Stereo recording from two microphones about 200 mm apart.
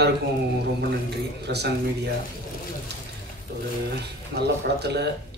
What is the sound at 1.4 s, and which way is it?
Speech, 55° right (ahead or behind).